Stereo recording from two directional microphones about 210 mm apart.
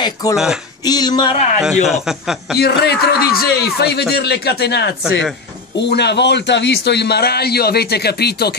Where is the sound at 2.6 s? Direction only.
50° left (ahead or behind).